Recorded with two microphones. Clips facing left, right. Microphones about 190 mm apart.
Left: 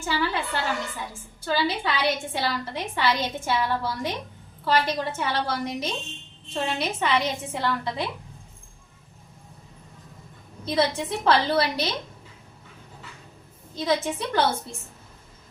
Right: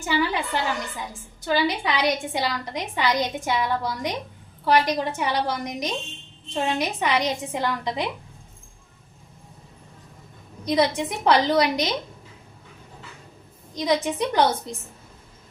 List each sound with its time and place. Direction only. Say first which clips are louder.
0.0 s a woman's voice: right 3 dB; 15° right (ahead or behind)
10.7 s a woman's voice: right 2 dB; 15° right (ahead or behind)
13.7 s a woman's voice: right 2 dB; 15° right (ahead or behind)